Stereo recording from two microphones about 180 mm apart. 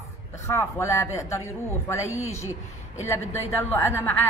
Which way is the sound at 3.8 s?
15° left (ahead or behind).